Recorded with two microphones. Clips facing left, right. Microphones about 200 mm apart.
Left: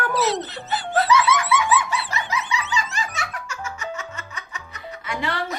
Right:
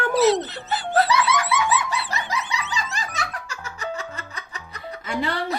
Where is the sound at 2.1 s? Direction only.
35° right (ahead or behind).